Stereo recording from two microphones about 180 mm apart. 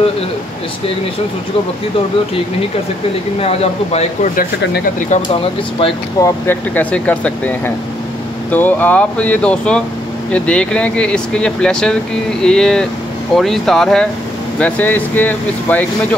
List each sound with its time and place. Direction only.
3.3 s speech: 35° left (ahead or behind)
6.1 s speech: 15° left (ahead or behind)